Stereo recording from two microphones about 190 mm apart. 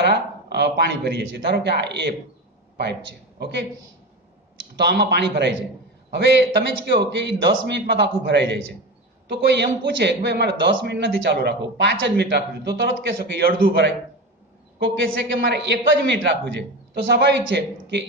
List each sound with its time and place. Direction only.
0.0 s a man's voice: 65° right (ahead or behind)
4.7 s a man's voice: 60° right (ahead or behind)
9.6 s a man's voice: 65° right (ahead or behind)
15.0 s a man's voice: 70° right (ahead or behind)